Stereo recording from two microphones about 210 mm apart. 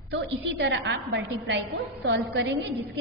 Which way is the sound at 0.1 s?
55° right (ahead or behind).